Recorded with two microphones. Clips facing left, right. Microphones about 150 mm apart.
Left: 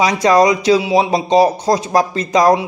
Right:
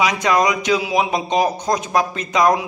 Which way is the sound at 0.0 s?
35° left (ahead or behind).